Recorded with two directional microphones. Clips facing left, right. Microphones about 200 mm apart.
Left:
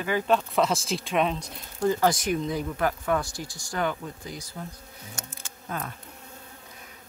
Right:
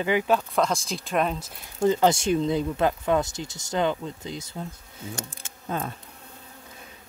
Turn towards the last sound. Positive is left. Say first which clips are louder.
# right 4 dB
turn(degrees=-25)  # may be behind; listen again after turning